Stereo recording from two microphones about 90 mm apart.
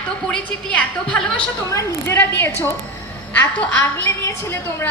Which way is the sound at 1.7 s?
35° left (ahead or behind).